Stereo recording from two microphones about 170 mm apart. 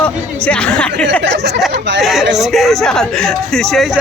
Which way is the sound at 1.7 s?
90° right.